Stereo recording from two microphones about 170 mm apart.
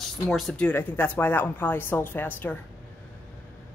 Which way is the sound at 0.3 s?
Centre (ahead or behind).